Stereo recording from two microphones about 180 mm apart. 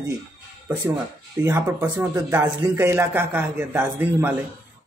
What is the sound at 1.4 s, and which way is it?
Speech, 15° right (ahead or behind).